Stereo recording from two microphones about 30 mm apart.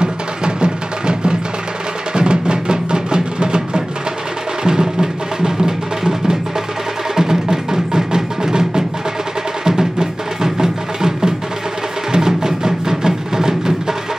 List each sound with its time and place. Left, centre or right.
0.0 s music: right